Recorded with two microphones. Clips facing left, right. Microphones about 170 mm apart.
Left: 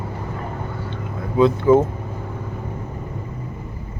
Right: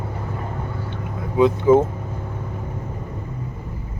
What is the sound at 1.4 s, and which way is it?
Speech, 15° right (ahead or behind).